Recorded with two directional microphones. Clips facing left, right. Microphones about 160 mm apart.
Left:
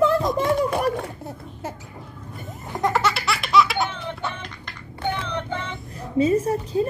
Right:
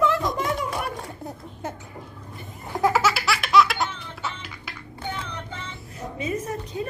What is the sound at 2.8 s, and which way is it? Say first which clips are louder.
Laughter: right 1 dB; 5° right (ahead or behind).